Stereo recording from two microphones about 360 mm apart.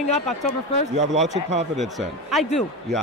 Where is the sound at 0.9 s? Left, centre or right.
Centre.